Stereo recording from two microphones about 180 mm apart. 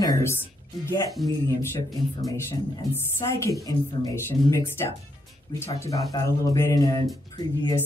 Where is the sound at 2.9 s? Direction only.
15° left (ahead or behind).